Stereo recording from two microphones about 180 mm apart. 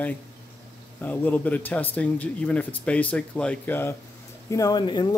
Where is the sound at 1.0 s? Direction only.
10° left (ahead or behind).